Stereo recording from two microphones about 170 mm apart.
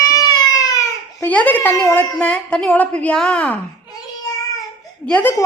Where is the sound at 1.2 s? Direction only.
10° left (ahead or behind).